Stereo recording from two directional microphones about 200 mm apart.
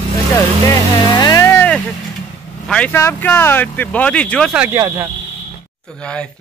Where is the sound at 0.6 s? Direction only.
20° left (ahead or behind).